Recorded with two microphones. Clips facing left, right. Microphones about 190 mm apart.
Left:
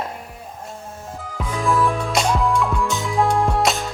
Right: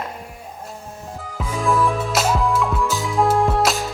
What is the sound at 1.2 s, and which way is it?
Music, centre (ahead or behind).